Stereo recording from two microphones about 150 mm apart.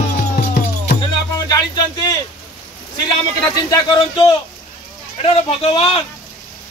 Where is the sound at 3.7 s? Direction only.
30° left (ahead or behind).